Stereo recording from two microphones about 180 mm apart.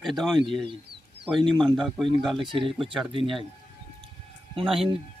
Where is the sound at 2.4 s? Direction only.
30° right (ahead or behind).